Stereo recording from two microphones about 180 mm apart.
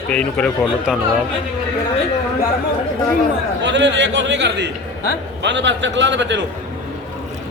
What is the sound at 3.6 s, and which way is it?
A man's voice, 80° right.